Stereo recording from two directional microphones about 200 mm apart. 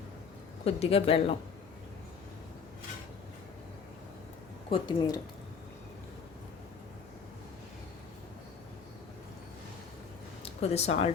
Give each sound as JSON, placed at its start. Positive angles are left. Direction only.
{"t": 0.6, "sound": "speech", "side_deg": 30}
{"t": 4.7, "sound": "speech", "side_deg": 25}
{"t": 10.4, "sound": "speech", "side_deg": 30}